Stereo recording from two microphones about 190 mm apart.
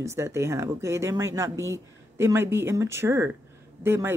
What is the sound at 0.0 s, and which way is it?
Speech, 15° right (ahead or behind).